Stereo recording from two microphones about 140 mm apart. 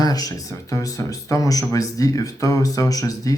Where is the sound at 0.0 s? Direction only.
25° left (ahead or behind).